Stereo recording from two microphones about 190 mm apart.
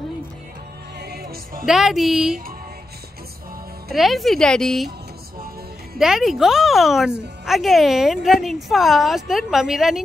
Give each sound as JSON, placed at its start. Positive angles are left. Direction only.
{"t": 0.9, "sound": "music", "side_deg": -60}
{"t": 1.7, "sound": "a woman's voice", "side_deg": 0}
{"t": 3.9, "sound": "a woman's voice", "side_deg": 0}
{"t": 5.9, "sound": "a woman's voice", "side_deg": 0}